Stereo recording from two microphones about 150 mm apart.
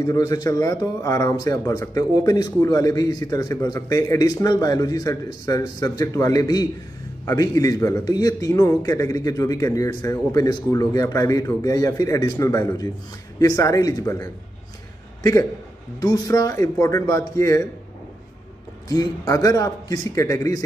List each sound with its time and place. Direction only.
0.0 s speech: 25° left (ahead or behind)
16.0 s speech: 25° left (ahead or behind)
18.9 s speech: 25° left (ahead or behind)